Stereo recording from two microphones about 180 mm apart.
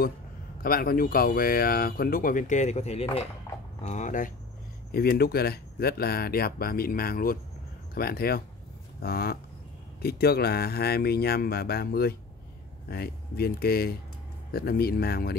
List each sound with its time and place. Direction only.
0.6 s speech: 55° left (ahead or behind); by 3.3 s 35° left (ahead or behind)
3.5 s a sound: 15° left (ahead or behind)
3.8 s speech: 40° left (ahead or behind)
4.9 s speech: 60° left (ahead or behind)